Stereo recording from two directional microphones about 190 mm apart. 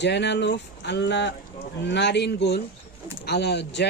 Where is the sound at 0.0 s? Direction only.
65° left (ahead or behind).